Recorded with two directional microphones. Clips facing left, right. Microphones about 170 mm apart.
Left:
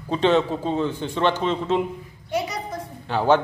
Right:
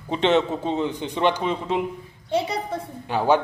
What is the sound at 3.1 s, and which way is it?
Speech, 10° right (ahead or behind).